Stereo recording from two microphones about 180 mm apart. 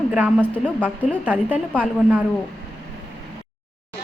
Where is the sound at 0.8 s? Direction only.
10° right (ahead or behind).